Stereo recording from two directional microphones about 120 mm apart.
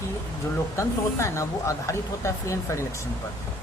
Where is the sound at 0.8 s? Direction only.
25° left (ahead or behind).